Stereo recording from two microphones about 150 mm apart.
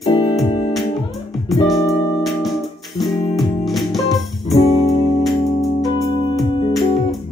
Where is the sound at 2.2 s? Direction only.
Centre (ahead or behind).